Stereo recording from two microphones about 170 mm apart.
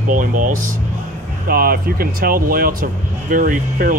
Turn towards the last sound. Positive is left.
turn(degrees=-55)  # may be behind; listen again after turning